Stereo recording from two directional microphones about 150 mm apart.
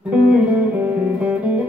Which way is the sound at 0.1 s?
10° right (ahead or behind).